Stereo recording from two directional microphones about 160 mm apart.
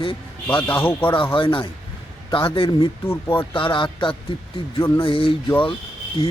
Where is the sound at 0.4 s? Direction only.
10° left (ahead or behind).